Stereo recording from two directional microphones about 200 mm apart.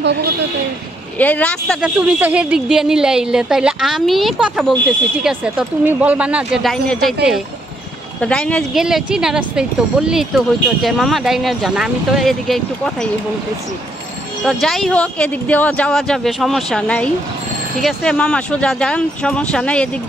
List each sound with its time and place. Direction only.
0.0 s a woman's voice: 55° right (ahead or behind)
1.1 s speech: 10° left (ahead or behind)
1.8 s speech: 5° right (ahead or behind)
8.2 s speech: 5° left (ahead or behind)
14.4 s speech: centre (ahead or behind)